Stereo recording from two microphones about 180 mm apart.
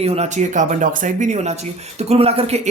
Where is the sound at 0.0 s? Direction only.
35° right (ahead or behind).